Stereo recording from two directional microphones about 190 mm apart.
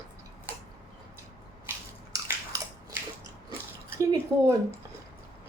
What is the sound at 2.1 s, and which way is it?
Bathtub, 15° right (ahead or behind).